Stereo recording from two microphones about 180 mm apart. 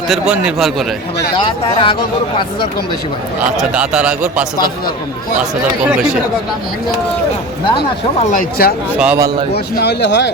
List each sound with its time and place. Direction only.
0.1 s a man's voice: 5° right (ahead or behind)
1.5 s speech: 25° left (ahead or behind)
3.6 s a man's voice: 5° right (ahead or behind)
8.2 s speech: 45° left (ahead or behind)
8.9 s a man's voice: 5° right (ahead or behind)
9.5 s speech: 65° left (ahead or behind)